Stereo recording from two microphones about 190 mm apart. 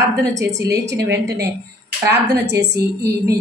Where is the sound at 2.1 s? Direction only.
60° right (ahead or behind).